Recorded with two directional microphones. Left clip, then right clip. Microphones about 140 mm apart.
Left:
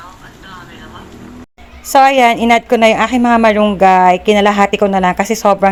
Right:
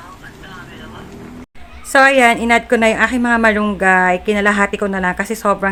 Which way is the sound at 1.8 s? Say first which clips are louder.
Left 2 dB; 30° left (ahead or behind).